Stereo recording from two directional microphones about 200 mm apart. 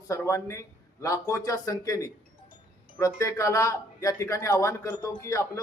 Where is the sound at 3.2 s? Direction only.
15° left (ahead or behind).